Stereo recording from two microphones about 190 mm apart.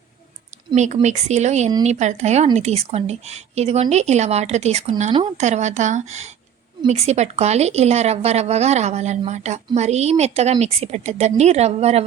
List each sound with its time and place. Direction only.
1.0 s speech: 35° right (ahead or behind)